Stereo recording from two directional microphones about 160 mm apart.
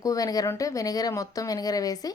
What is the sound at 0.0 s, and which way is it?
Speech, 20° left (ahead or behind).